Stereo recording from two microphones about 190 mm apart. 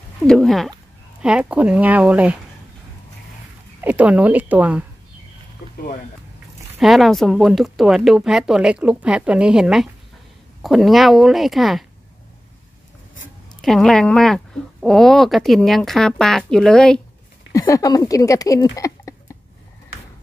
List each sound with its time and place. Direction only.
0.2 s speech: centre (ahead or behind)
3.8 s speech: 10° right (ahead or behind)
6.8 s speech: centre (ahead or behind)
13.6 s speech: centre (ahead or behind)
17.5 s speech: 15° left (ahead or behind)